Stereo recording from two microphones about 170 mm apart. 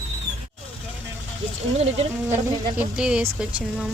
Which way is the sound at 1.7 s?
35° right (ahead or behind).